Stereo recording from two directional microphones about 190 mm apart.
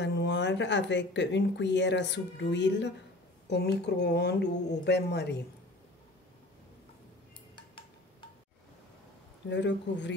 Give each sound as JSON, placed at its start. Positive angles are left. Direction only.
{"t": 0.0, "sound": "speech", "side_deg": 65}
{"t": 7.5, "sound": "a sound", "side_deg": 25}
{"t": 9.5, "sound": "speech", "side_deg": 70}